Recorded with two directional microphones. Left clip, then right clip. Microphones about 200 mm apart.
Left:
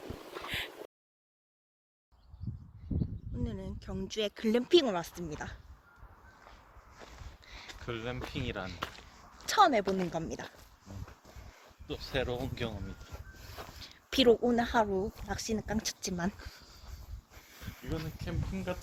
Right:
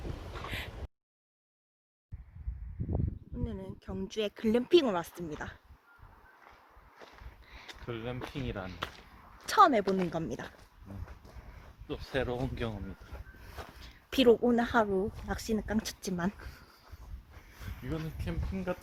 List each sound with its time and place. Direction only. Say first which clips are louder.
3.4 s speech: even; 5° right (ahead or behind)
7.4 s a sound: left 1 dB; centre (ahead or behind)
7.9 s speech: left 1 dB; 15° right (ahead or behind)
11.9 s speech: right 1 dB; 25° right (ahead or behind)
13.5 s a sound: even; 5° right (ahead or behind)
14.1 s speech: right 1 dB; 10° right (ahead or behind)
17.8 s speech: right 1 dB; 10° right (ahead or behind); by 18.8 s 25° right (ahead or behind)